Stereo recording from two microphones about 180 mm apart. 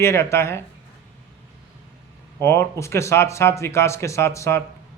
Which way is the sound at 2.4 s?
15° left (ahead or behind).